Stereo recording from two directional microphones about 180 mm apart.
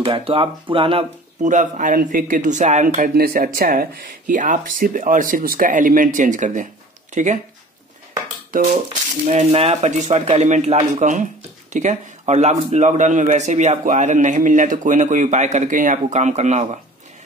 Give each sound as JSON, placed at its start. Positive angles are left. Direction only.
{"t": 0.0, "sound": "speech", "side_deg": -30}
{"t": 1.4, "sound": "speech", "side_deg": -40}
{"t": 8.5, "sound": "speech", "side_deg": -45}
{"t": 9.3, "sound": "a man's voice", "side_deg": -35}